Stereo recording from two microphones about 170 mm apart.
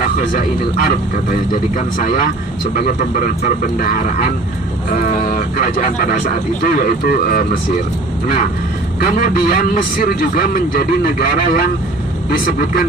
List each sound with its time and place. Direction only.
0.0 s a man's voice: 55° left (ahead or behind)
9.0 s a man's voice: 65° left (ahead or behind)